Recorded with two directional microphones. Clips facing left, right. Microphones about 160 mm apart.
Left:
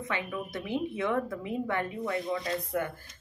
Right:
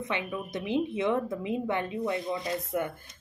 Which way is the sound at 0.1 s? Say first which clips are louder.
Right 1 dB; 20° right (ahead or behind).